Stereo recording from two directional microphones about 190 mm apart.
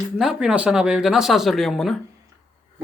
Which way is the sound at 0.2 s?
5° right (ahead or behind).